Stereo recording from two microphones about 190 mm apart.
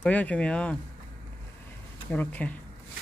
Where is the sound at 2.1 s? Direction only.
10° left (ahead or behind).